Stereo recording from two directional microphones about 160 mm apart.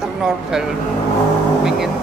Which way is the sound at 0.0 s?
5° right (ahead or behind).